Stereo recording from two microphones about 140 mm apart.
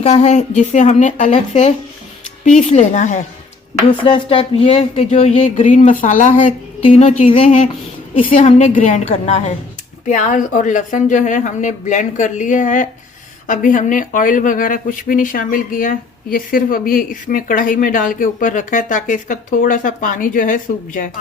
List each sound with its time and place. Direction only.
0.0 s a woman's voice: 55° left (ahead or behind)
4.0 s speech: 40° left (ahead or behind)
5.6 s a woman's voice: 65° left (ahead or behind)